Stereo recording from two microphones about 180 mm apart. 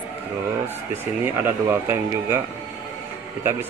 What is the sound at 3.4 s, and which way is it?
Speech, 15° right (ahead or behind).